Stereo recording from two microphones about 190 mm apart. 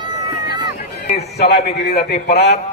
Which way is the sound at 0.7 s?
35° left (ahead or behind).